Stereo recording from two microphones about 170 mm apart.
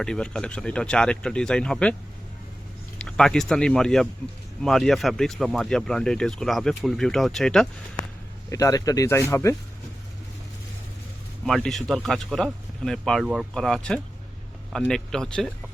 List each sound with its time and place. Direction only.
0.0 s speech: 5° left (ahead or behind)
3.0 s speech: 5° left (ahead or behind)
8.4 s speech: 20° left (ahead or behind)
11.4 s speech: centre (ahead or behind)